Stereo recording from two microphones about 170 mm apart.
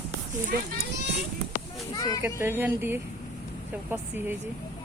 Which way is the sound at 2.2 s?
15° right (ahead or behind).